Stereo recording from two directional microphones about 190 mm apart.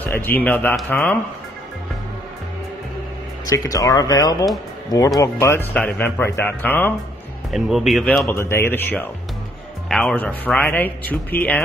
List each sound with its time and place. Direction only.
0.0 s speech: 10° left (ahead or behind)
3.4 s speech: 20° left (ahead or behind)
7.5 s speech: centre (ahead or behind)
8.3 s speech: 15° left (ahead or behind)